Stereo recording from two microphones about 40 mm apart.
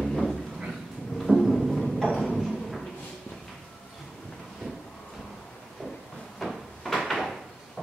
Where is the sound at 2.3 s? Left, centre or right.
Centre.